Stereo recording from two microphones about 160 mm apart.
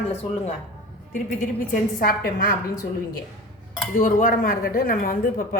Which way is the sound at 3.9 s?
60° left (ahead or behind).